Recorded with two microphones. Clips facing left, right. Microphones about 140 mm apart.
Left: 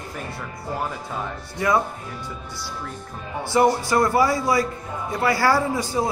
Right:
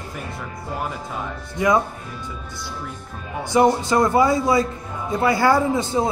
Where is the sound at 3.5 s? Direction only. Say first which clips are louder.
Right 2 dB; 20° right (ahead or behind).